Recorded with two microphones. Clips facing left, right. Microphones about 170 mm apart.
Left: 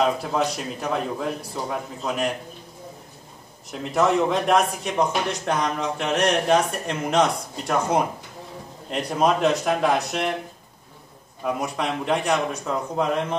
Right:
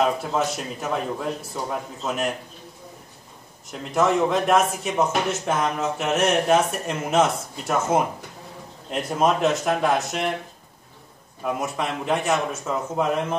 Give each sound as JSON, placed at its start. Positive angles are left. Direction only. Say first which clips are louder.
{"t": 0.0, "sound": "speech", "louder": "even", "side_deg": 0}
{"t": 3.7, "sound": "speech", "louder": "even", "side_deg": 0}
{"t": 11.4, "sound": "speech", "louder": "left 1 dB", "side_deg": 0}